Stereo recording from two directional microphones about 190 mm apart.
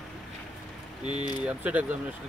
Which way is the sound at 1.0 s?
25° left (ahead or behind).